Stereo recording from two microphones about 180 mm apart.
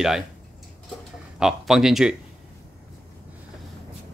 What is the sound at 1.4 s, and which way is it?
Speech, centre (ahead or behind).